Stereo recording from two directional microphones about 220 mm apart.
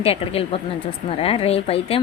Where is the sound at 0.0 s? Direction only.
25° left (ahead or behind).